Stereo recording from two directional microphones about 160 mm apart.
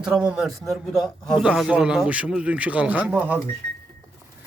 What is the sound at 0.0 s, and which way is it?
A man's voice, 5° right (ahead or behind).